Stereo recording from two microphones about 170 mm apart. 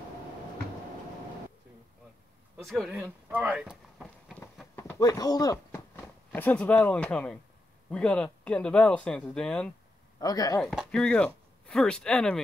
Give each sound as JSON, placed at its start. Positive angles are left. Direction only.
{"t": 2.5, "sound": "speech", "side_deg": 0}
{"t": 2.9, "sound": "speech", "side_deg": -10}
{"t": 4.7, "sound": "speech", "side_deg": 15}
{"t": 10.1, "sound": "speech", "side_deg": 25}
{"t": 10.6, "sound": "speech", "side_deg": 0}